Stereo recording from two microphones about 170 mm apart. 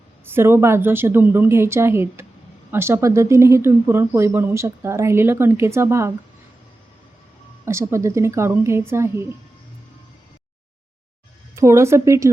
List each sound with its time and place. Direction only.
0.3 s speech: 15° right (ahead or behind)
7.6 s speech: 15° right (ahead or behind)
11.5 s speech: 15° right (ahead or behind)